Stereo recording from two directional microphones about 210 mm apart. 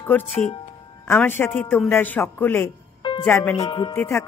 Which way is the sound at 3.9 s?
10° left (ahead or behind).